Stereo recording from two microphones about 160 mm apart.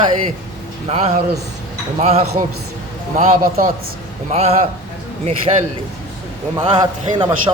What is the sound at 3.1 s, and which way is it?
Speech, 55° right (ahead or behind).